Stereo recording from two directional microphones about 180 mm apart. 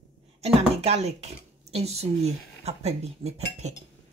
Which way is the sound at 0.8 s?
35° right (ahead or behind).